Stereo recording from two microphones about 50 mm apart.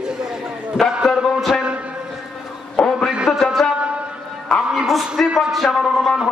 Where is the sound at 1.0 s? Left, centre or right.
Centre.